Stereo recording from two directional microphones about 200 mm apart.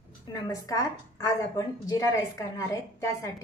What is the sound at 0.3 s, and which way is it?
Speech, 15° left (ahead or behind).